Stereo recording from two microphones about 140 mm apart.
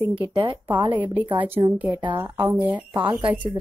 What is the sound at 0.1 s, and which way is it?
Speech, 40° right (ahead or behind).